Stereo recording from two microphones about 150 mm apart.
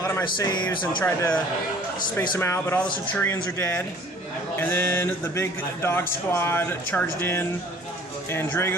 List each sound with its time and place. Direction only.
0.0 s speech: 25° left (ahead or behind)
1.0 s speech: 10° left (ahead or behind)